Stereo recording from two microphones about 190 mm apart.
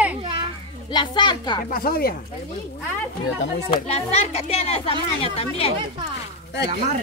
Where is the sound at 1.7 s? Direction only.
50° left (ahead or behind).